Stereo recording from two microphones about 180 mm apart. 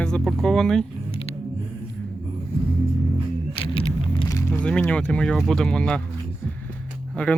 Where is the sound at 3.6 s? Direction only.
30° left (ahead or behind).